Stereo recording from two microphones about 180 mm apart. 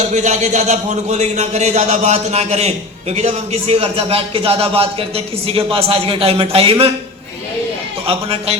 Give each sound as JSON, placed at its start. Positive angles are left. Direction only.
{"t": 0.1, "sound": "speech", "side_deg": -40}
{"t": 8.0, "sound": "speech", "side_deg": -35}